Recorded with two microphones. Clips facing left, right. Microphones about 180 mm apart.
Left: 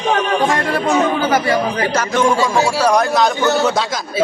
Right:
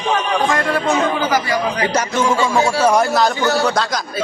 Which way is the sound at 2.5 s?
10° left (ahead or behind).